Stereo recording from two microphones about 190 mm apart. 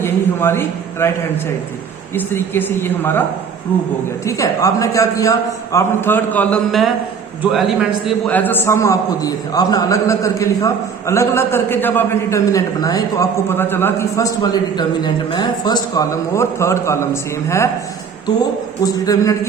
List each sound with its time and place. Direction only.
0.0 s a man's voice: 15° left (ahead or behind)
2.1 s a man's voice: 10° left (ahead or behind)
4.3 s a man's voice: 15° left (ahead or behind); by 8.1 s centre (ahead or behind)
8.3 s a man's voice: 10° left (ahead or behind)
18.8 s speech: 20° left (ahead or behind)